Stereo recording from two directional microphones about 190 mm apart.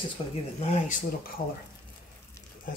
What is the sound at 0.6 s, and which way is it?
Speech, 40° left (ahead or behind).